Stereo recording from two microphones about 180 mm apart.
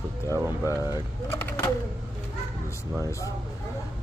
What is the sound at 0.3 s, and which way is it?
Speech, 15° right (ahead or behind).